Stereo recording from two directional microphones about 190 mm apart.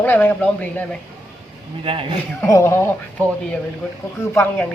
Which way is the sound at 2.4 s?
15° left (ahead or behind).